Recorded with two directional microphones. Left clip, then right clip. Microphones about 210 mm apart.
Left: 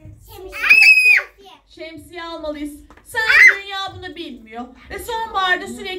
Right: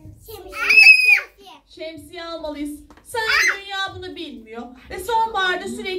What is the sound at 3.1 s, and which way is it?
Speech, 10° right (ahead or behind).